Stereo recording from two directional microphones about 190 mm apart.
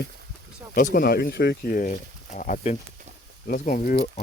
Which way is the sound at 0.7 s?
50° left (ahead or behind).